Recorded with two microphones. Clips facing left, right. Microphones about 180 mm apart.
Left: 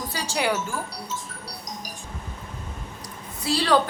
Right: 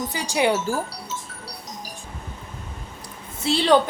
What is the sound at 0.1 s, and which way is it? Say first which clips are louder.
Speech: right 4 dB; 15° right (ahead or behind).